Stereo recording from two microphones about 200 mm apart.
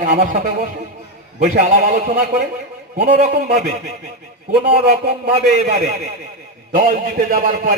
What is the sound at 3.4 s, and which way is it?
Speech, 35° right (ahead or behind).